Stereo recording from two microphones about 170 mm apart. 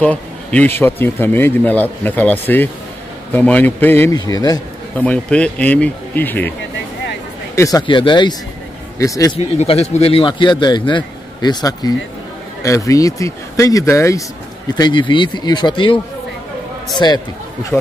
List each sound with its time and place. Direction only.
0.0 s a man's voice: 10° left (ahead or behind)
4.9 s a man's voice: 10° left (ahead or behind)
7.5 s a man's voice: 20° left (ahead or behind)
9.4 s a man's voice: 35° left (ahead or behind)